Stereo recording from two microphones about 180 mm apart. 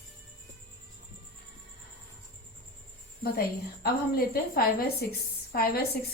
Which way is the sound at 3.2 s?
60° left (ahead or behind).